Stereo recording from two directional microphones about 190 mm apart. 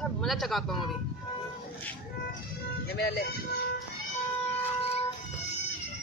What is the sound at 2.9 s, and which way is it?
Speech, 55° left (ahead or behind).